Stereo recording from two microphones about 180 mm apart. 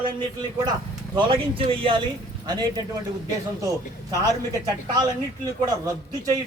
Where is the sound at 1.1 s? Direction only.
30° right (ahead or behind).